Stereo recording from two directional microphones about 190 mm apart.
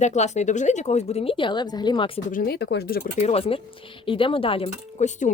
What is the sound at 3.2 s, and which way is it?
Speech, 35° left (ahead or behind).